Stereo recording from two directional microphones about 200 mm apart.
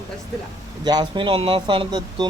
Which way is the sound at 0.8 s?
20° right (ahead or behind).